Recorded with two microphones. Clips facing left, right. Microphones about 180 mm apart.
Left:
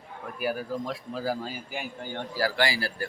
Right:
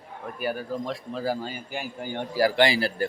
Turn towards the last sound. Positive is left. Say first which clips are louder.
# right 6 dB
turn(degrees=-20)  # may be behind; listen again after turning